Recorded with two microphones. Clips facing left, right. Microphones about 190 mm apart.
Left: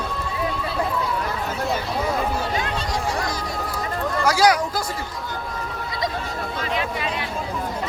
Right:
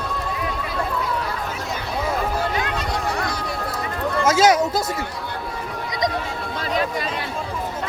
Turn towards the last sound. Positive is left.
turn(degrees=-40)  # may be behind; listen again after turning